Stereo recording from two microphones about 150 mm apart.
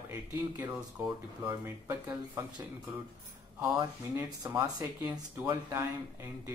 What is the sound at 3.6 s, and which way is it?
Speech, 25° right (ahead or behind).